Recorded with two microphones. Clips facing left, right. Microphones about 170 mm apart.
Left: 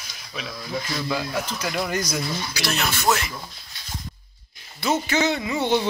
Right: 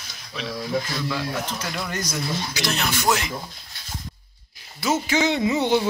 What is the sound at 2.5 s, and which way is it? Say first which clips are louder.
Speech: right 1 dB; 15° right (ahead or behind).